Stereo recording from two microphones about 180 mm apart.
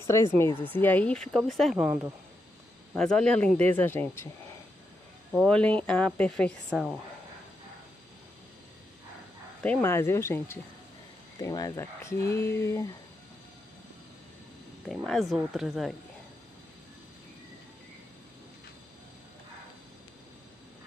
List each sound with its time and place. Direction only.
0.0 s speech: 15° left (ahead or behind)
5.3 s speech: centre (ahead or behind)
9.6 s speech: 10° left (ahead or behind)
14.9 s speech: centre (ahead or behind)